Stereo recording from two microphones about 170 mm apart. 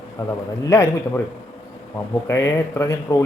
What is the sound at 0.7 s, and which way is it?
Speech, 15° left (ahead or behind).